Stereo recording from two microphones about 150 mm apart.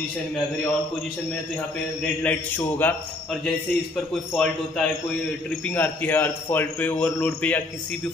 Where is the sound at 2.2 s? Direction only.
15° left (ahead or behind).